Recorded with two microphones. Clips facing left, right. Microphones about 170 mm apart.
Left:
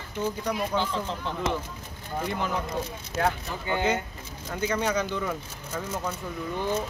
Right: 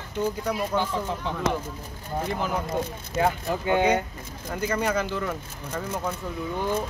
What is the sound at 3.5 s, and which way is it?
Speech, 60° right (ahead or behind).